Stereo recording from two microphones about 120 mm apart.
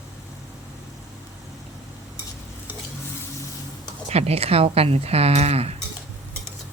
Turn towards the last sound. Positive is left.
turn(degrees=-60)  # may be behind; listen again after turning